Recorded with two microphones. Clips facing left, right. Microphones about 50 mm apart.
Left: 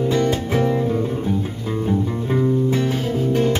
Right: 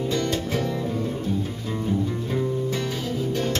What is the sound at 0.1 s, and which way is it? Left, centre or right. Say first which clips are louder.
Music: left 6 dB; left.